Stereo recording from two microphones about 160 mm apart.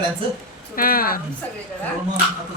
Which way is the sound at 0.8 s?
65° left (ahead or behind).